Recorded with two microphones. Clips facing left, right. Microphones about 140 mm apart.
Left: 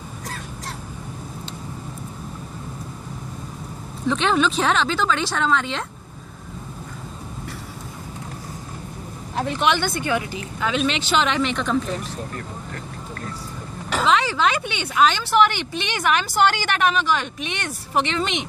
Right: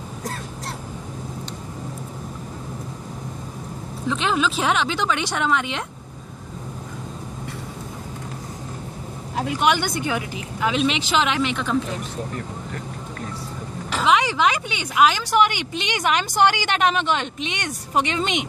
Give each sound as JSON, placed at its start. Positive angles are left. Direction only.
{"t": 4.1, "sound": "speech", "side_deg": -5}
{"t": 9.4, "sound": "speech", "side_deg": -10}
{"t": 14.0, "sound": "speech", "side_deg": -15}